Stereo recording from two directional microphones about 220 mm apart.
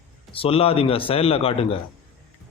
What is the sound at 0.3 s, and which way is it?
A man's voice, 25° left (ahead or behind).